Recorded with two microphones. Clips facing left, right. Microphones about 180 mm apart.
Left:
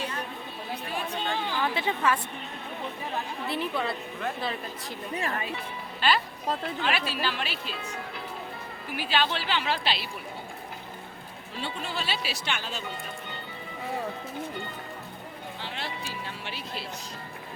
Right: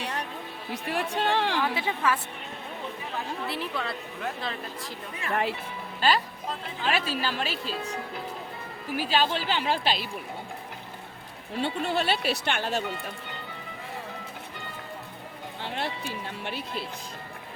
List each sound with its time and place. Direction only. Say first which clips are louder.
0.0 s music: right 1 dB; 70° right (ahead or behind)
0.7 s speech: right 4 dB; 90° right
1.6 s speech: even; 5° right (ahead or behind)
3.5 s a woman's voice: left 7 dB; centre (ahead or behind)
6.0 s a woman's voice: right 1 dB; 40° right (ahead or behind)
9.0 s a woman's voice: right 2 dB; 40° right (ahead or behind)
11.5 s speech: right 7 dB; 60° right (ahead or behind)
15.6 s speech: right 5 dB; 55° right (ahead or behind)